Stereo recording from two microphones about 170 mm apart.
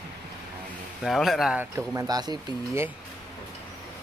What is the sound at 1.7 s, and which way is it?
Speech, 15° right (ahead or behind).